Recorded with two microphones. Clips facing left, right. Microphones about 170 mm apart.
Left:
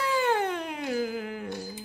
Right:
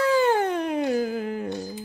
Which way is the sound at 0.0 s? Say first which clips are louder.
Right 6 dB; 40° right (ahead or behind).